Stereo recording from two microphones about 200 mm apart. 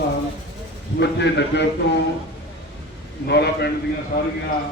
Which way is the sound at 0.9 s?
60° left (ahead or behind).